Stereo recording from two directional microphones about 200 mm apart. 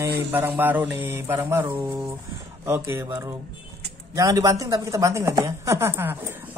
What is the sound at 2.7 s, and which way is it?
A woman's voice, 10° right (ahead or behind).